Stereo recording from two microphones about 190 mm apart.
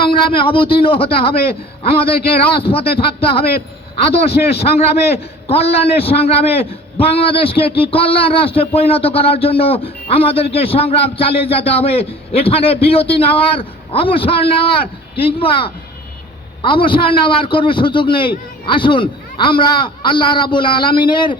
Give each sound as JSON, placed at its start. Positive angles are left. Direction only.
{"t": 0.0, "sound": "a man's voice", "side_deg": 25}
{"t": 5.0, "sound": "a man's voice", "side_deg": 30}